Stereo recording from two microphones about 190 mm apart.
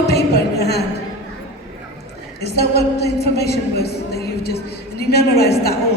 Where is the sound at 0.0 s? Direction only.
60° left (ahead or behind).